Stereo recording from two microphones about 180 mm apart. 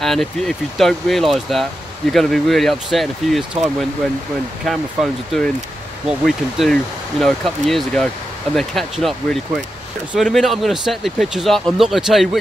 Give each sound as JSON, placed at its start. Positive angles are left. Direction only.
{"t": 0.0, "sound": "speech", "side_deg": 0}